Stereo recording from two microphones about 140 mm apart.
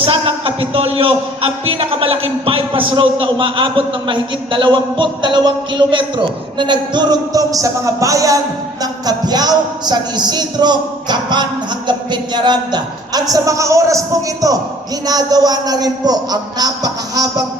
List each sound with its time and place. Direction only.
0.0 s speech: 40° right (ahead or behind)